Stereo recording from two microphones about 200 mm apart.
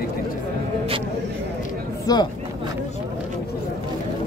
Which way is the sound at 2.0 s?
20° left (ahead or behind).